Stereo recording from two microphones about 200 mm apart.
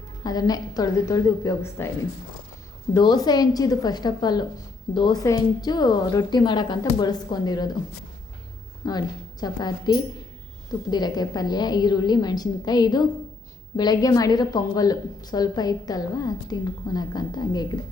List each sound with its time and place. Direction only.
0.3 s speech: 20° left (ahead or behind)
2.9 s speech: 20° left (ahead or behind)
8.8 s a woman's voice: 20° left (ahead or behind)